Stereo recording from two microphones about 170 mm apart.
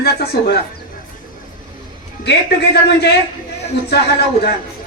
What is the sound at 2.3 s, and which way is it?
A man's voice, 75° left (ahead or behind).